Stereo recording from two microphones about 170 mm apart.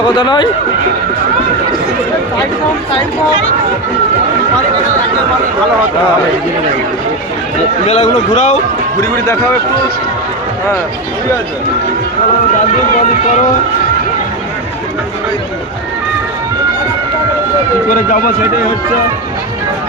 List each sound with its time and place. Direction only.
0.0 s speech: 25° left (ahead or behind)
7.9 s a man's voice: 40° left (ahead or behind)
9.0 s speech: 15° left (ahead or behind)
17.8 s speech: 55° left (ahead or behind)